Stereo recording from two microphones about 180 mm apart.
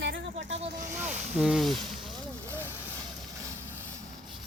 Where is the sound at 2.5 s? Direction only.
10° right (ahead or behind).